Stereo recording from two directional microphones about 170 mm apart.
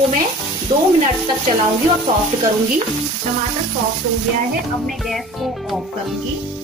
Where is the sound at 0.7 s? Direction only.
35° right (ahead or behind).